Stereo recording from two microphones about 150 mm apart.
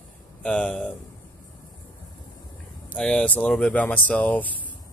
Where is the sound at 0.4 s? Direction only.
5° left (ahead or behind).